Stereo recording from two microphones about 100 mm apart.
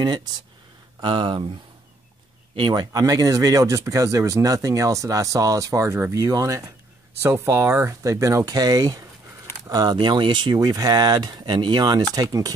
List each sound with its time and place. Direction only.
0.0 s speech: 45° right (ahead or behind)
2.5 s speech: 50° right (ahead or behind); by 6.1 s 25° right (ahead or behind)
6.1 s speech: 35° right (ahead or behind)
9.9 s speech: 55° right (ahead or behind); by 12.5 s 40° right (ahead or behind)